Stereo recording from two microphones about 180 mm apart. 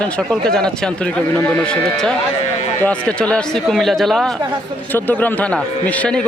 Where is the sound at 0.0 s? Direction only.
5° left (ahead or behind).